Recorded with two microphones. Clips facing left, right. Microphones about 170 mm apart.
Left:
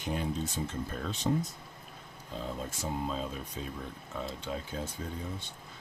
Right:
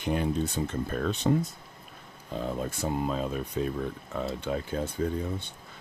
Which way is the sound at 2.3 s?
60° right (ahead or behind).